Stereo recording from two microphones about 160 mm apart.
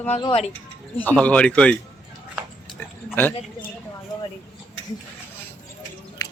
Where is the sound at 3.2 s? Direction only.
10° left (ahead or behind).